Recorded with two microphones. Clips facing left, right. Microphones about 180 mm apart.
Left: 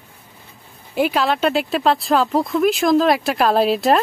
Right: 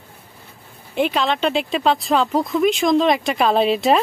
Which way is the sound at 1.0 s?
5° left (ahead or behind).